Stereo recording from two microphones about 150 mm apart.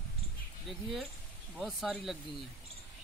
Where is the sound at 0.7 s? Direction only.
Centre (ahead or behind).